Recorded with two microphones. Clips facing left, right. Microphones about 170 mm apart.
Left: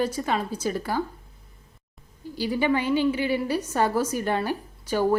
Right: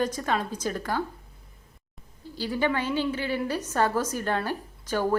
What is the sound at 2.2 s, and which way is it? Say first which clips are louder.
A woman's voice: left 2 dB; 10° left (ahead or behind).